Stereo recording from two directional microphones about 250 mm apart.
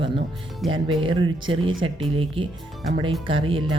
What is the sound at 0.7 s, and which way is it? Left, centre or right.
Speech, centre.